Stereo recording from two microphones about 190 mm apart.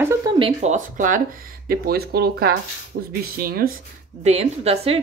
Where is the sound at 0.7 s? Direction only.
45° right (ahead or behind).